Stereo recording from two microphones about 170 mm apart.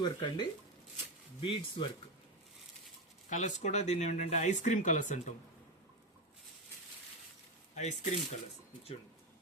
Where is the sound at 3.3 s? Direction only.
45° left (ahead or behind).